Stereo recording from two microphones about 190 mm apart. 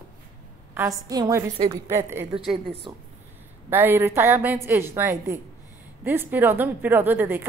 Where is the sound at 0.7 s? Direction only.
15° right (ahead or behind).